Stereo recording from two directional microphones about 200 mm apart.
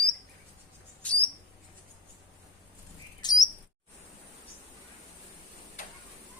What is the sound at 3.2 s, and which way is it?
Chirp, 20° left (ahead or behind).